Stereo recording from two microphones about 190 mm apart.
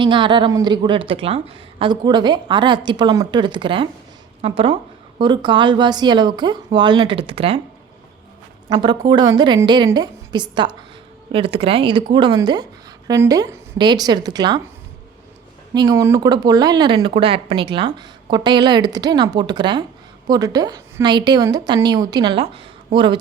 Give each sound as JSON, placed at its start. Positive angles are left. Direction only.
{"t": 0.0, "sound": "speech", "side_deg": -25}
{"t": 8.7, "sound": "speech", "side_deg": -25}
{"t": 15.7, "sound": "speech", "side_deg": -20}